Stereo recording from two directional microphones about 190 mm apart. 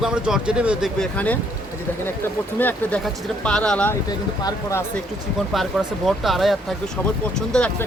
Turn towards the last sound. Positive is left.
turn(degrees=5)  # may be behind; listen again after turning